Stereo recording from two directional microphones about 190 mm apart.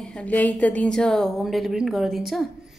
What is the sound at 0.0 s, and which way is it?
A woman's voice, 5° left (ahead or behind).